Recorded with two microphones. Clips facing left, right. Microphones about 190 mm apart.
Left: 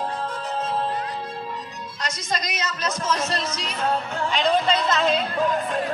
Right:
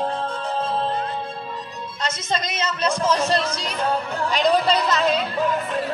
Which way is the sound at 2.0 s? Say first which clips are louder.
Right 3 dB; 25° right (ahead or behind).